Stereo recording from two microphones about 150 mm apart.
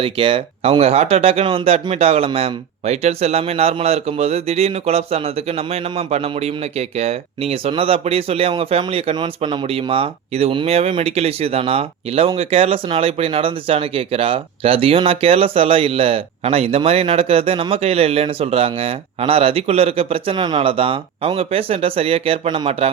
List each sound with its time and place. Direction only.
0.0 s speech: 35° right (ahead or behind)